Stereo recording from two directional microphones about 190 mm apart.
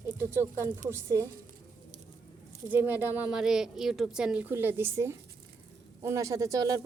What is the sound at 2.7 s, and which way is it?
A woman's voice, 10° right (ahead or behind).